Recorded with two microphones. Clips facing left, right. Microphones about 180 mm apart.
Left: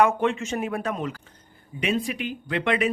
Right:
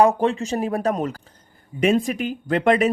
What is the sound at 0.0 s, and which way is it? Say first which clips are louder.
Speech: right 4 dB; 35° right (ahead or behind).